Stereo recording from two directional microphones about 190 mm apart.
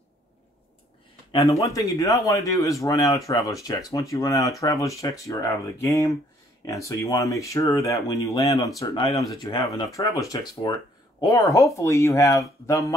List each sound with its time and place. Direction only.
1.3 s speech: 15° left (ahead or behind)